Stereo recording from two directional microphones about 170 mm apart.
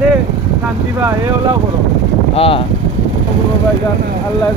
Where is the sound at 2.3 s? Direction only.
35° left (ahead or behind).